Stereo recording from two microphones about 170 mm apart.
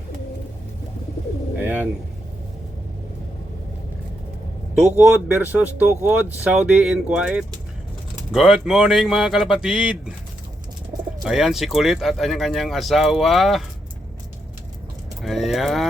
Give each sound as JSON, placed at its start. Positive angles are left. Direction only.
{"t": 1.5, "sound": "bird", "side_deg": -10}
{"t": 4.7, "sound": "speech", "side_deg": -10}
{"t": 11.2, "sound": "speech", "side_deg": 0}
{"t": 15.2, "sound": "speech", "side_deg": 0}